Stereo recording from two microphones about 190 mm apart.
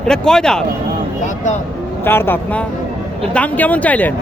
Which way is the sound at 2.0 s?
10° left (ahead or behind).